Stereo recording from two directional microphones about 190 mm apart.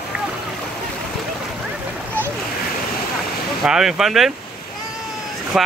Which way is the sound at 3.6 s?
Centre (ahead or behind).